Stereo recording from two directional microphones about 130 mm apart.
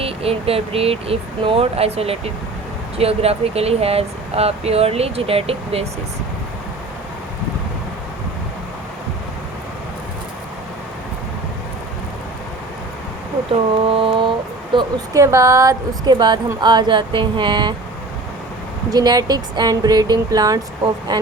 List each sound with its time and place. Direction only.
0.0 s speech: 50° right (ahead or behind)
13.5 s a sound: 45° right (ahead or behind)
15.1 s speech: 25° right (ahead or behind)
16.1 s speech: 35° right (ahead or behind)
18.9 s speech: 30° right (ahead or behind)